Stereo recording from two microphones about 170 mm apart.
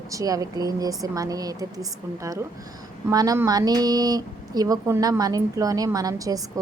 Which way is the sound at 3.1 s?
20° right (ahead or behind).